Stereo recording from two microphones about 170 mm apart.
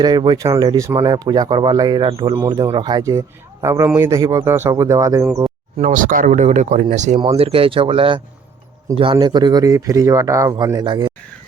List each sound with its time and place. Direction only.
0.0 s a man's voice: 25° right (ahead or behind)
5.8 s speech: 50° right (ahead or behind)
7.3 s speech: 35° right (ahead or behind)